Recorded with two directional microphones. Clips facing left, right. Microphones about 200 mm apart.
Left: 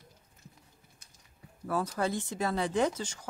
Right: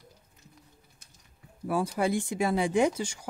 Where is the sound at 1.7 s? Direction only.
10° right (ahead or behind).